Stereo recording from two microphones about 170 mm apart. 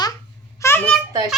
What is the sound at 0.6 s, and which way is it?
Babbling, 10° left (ahead or behind).